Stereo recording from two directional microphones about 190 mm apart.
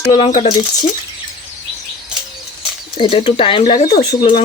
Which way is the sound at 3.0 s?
30° left (ahead or behind).